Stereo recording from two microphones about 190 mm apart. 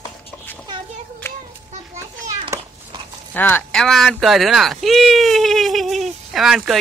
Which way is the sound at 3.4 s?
10° left (ahead or behind).